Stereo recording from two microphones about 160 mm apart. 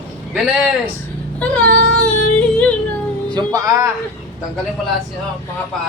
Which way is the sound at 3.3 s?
20° right (ahead or behind).